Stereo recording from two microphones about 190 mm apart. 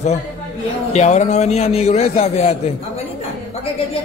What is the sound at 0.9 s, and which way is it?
A man's voice, 35° left (ahead or behind).